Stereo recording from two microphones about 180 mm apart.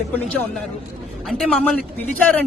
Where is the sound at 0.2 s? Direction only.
5° left (ahead or behind).